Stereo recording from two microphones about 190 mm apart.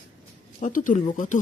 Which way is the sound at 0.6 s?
45° left (ahead or behind).